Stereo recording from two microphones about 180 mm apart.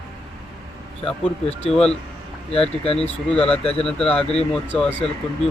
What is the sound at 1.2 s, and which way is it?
Speech, 35° left (ahead or behind).